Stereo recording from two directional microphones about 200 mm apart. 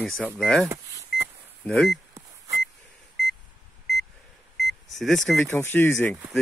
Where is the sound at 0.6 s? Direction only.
15° right (ahead or behind).